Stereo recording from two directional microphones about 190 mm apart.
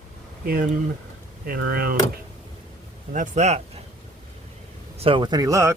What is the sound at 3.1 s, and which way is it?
Speech, 40° right (ahead or behind).